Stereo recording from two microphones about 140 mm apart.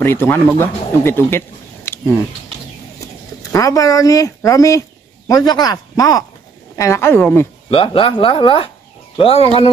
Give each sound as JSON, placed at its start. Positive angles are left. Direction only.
{"t": 0.0, "sound": "speech", "side_deg": 15}
{"t": 1.9, "sound": "a sound", "side_deg": 15}
{"t": 3.5, "sound": "speech", "side_deg": 25}
{"t": 7.7, "sound": "speech", "side_deg": 40}